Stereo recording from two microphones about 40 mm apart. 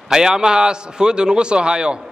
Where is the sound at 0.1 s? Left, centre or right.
Centre.